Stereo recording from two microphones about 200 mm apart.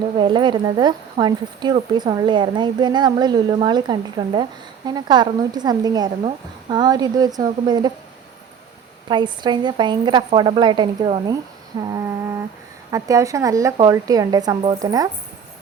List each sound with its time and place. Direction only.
0.2 s speech: 20° right (ahead or behind)
9.0 s a woman's voice: 20° right (ahead or behind)